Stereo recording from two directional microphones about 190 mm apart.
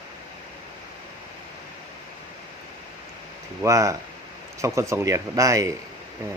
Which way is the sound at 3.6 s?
15° right (ahead or behind).